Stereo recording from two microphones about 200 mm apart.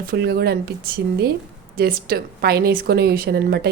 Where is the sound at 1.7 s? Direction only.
50° right (ahead or behind).